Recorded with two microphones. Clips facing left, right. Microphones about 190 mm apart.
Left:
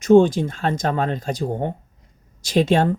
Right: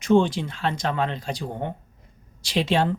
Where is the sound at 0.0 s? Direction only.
45° left (ahead or behind).